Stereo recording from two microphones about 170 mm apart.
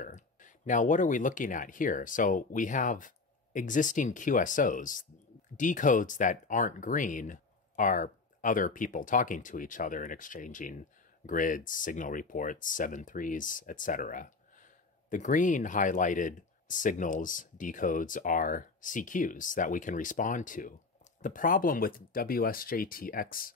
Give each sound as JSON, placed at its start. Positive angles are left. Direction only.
{"t": 0.0, "sound": "speech", "side_deg": 50}